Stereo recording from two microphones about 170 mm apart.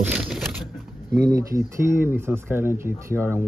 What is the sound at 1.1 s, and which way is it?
Speech, 20° right (ahead or behind).